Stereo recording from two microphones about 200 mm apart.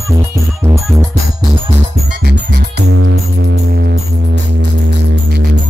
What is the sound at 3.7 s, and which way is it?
Music, 50° right (ahead or behind).